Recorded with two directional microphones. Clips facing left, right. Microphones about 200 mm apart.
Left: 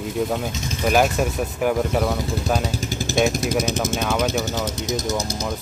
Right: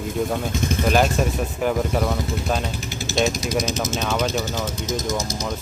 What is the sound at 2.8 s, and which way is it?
Vehicle, 45° left (ahead or behind).